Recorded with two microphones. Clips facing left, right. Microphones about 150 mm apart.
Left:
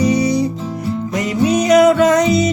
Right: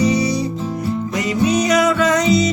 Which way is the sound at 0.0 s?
55° left (ahead or behind).